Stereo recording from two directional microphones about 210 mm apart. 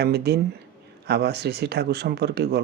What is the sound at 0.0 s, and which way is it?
Speech, 50° right (ahead or behind).